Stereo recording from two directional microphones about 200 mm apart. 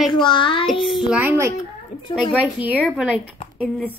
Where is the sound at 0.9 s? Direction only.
5° right (ahead or behind).